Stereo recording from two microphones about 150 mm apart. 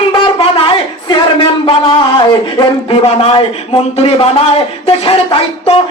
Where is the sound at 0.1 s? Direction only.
35° left (ahead or behind).